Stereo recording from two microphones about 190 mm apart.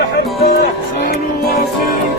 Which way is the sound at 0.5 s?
55° left (ahead or behind).